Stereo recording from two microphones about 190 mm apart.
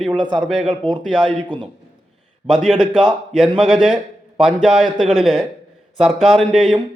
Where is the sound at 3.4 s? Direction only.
Centre (ahead or behind).